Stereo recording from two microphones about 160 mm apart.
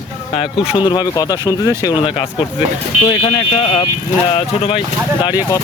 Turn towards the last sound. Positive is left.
turn(degrees=35)  # may be behind; listen again after turning